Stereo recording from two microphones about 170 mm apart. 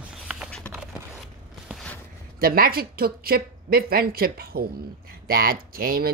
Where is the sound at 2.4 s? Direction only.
60° right (ahead or behind).